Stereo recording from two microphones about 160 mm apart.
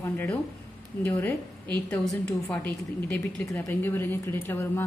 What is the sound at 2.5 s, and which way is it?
A woman's voice, 10° left (ahead or behind).